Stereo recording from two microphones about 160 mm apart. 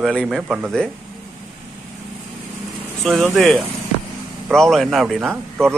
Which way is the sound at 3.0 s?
Centre (ahead or behind).